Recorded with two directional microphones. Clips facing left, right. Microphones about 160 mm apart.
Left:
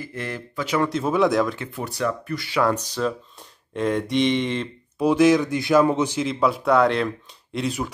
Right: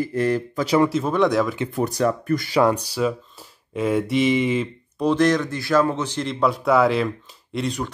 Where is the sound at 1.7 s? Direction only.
40° right (ahead or behind).